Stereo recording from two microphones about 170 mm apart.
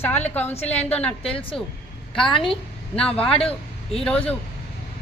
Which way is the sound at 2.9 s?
5° left (ahead or behind).